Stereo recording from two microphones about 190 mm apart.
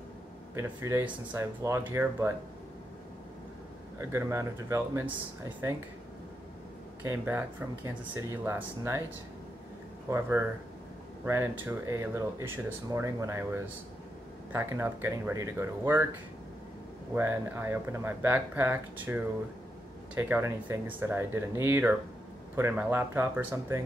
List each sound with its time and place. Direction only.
0.6 s speech: 15° right (ahead or behind)
4.0 s speech: 15° right (ahead or behind)
7.0 s speech: 10° right (ahead or behind)
10.0 s speech: 15° right (ahead or behind)
17.1 s speech: 10° right (ahead or behind)